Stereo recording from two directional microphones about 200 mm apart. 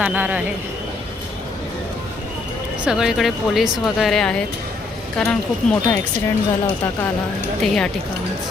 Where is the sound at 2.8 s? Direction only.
5° right (ahead or behind).